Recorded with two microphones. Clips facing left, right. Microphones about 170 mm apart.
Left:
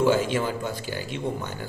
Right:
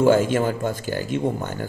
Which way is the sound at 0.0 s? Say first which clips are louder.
Right 5 dB; 50° right (ahead or behind).